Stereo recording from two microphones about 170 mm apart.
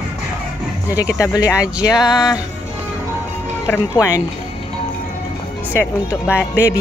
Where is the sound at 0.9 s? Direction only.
20° left (ahead or behind).